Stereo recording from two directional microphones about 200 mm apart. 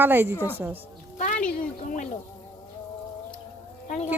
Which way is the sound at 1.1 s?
35° left (ahead or behind).